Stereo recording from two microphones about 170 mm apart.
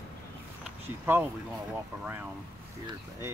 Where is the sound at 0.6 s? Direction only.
10° right (ahead or behind).